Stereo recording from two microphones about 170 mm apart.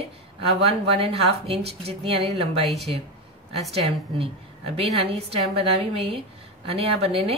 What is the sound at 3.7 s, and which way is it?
Speech, 35° right (ahead or behind).